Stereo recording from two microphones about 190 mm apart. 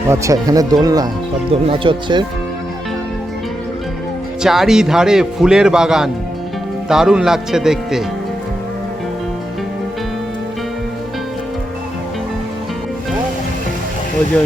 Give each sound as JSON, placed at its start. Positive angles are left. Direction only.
{"t": 0.1, "sound": "speech", "side_deg": -15}
{"t": 4.4, "sound": "speech", "side_deg": 0}